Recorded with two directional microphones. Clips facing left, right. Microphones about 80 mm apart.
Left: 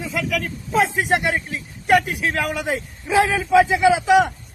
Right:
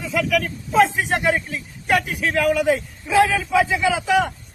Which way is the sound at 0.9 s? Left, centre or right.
Centre.